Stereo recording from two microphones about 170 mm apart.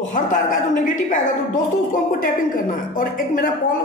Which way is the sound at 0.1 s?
50° left (ahead or behind).